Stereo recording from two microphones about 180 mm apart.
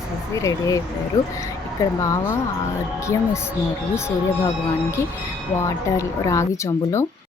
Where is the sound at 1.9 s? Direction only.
20° left (ahead or behind).